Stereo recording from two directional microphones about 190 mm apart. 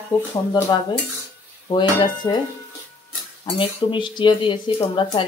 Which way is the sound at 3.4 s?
25° left (ahead or behind).